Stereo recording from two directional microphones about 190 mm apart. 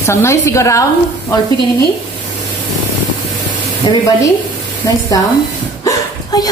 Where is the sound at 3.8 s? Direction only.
25° left (ahead or behind).